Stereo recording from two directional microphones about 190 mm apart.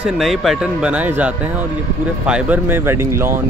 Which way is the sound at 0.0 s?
Centre (ahead or behind).